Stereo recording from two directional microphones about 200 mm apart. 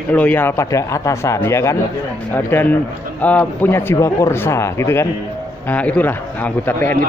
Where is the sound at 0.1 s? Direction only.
10° left (ahead or behind).